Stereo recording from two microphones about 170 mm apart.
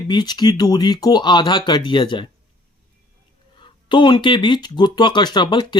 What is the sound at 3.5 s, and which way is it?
Speech, 30° left (ahead or behind).